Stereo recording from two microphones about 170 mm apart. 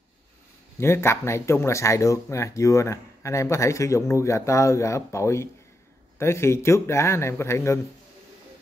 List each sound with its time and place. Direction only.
0.7 s speech: 15° left (ahead or behind)